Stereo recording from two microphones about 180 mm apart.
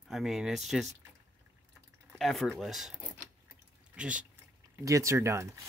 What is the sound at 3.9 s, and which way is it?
Speech, 5° right (ahead or behind).